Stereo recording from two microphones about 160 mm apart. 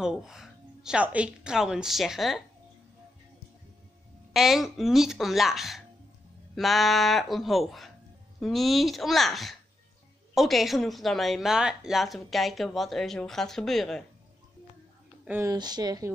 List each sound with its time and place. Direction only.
0.0 s speech: 5° right (ahead or behind)
4.3 s speech: centre (ahead or behind)
15.2 s speech: 15° right (ahead or behind)
15.5 s speech: 25° right (ahead or behind)